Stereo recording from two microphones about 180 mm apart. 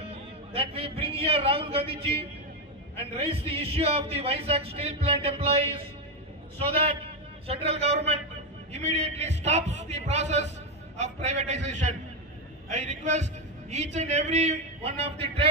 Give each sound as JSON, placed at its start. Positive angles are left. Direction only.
{"t": 0.1, "sound": "a man's voice", "side_deg": -30}